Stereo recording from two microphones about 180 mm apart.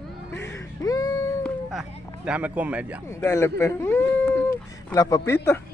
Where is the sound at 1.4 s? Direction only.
Centre (ahead or behind).